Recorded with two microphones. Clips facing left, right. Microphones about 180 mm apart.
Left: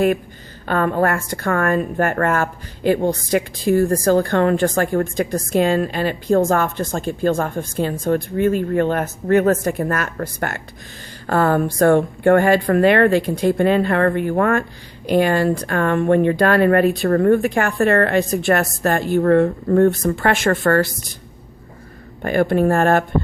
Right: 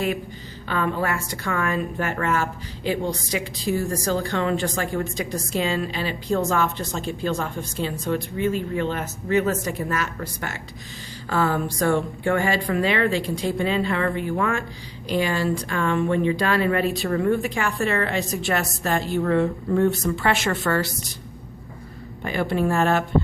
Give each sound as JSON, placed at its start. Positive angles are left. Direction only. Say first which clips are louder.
{"t": 0.7, "sound": "a woman's voice", "louder": "left 6 dB", "side_deg": 50}
{"t": 22.2, "sound": "a woman's voice", "louder": "left 7 dB", "side_deg": 50}